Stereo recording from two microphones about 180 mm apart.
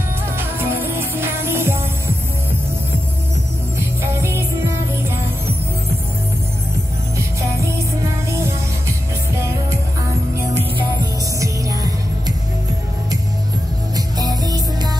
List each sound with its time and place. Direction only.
0.4 s music: 10° right (ahead or behind)
4.0 s music: 15° right (ahead or behind)
7.2 s music: 15° right (ahead or behind)
11.3 s music: 20° right (ahead or behind)
13.9 s music: 20° right (ahead or behind)